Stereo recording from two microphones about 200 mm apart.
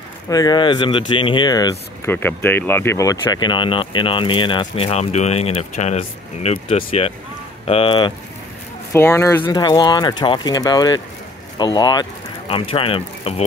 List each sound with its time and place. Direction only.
0.3 s speech: 20° left (ahead or behind)
8.9 s speech: 15° left (ahead or behind); by 13.5 s 30° left (ahead or behind)